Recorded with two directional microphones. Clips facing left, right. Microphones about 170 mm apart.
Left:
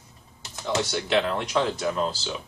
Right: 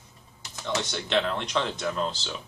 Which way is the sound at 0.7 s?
5° left (ahead or behind).